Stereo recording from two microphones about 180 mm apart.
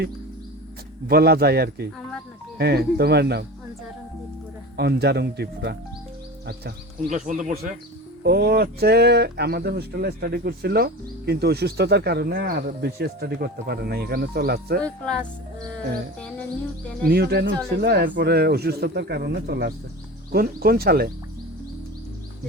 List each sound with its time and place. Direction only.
1.0 s speech: 60° right (ahead or behind)
4.8 s speech: 65° right (ahead or behind)
7.1 s speech: 45° right (ahead or behind)
8.2 s speech: 65° right (ahead or behind)
14.8 s speech: 5° left (ahead or behind)
17.1 s speech: 60° right (ahead or behind)